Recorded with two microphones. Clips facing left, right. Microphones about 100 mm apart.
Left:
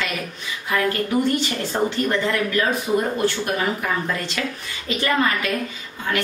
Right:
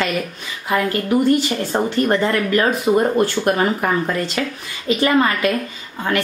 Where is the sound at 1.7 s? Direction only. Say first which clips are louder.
Right 4 dB; 45° right (ahead or behind).